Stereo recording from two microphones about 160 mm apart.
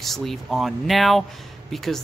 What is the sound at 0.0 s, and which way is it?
Speech, centre (ahead or behind).